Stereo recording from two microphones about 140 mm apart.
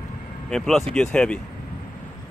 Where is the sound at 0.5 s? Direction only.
5° left (ahead or behind).